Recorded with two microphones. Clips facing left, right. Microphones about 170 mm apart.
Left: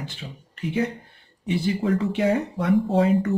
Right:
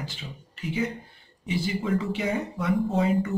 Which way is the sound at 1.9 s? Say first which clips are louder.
Left 5 dB; 60° left (ahead or behind).